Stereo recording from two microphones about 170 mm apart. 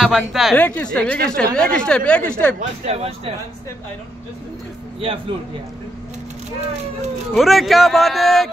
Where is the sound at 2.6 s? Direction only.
40° right (ahead or behind).